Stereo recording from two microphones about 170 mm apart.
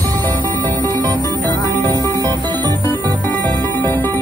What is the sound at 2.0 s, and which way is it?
Music, 25° right (ahead or behind).